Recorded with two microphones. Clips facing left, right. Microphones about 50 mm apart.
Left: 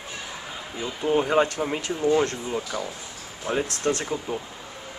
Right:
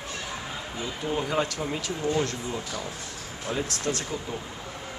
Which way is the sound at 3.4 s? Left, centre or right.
Left.